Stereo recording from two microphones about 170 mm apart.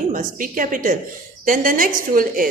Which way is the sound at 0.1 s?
50° right (ahead or behind).